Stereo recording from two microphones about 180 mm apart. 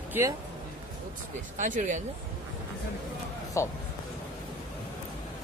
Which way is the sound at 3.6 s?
15° left (ahead or behind).